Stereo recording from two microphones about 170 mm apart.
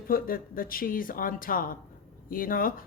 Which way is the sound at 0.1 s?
55° left (ahead or behind).